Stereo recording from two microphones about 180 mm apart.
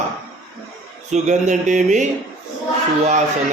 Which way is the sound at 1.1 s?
40° right (ahead or behind).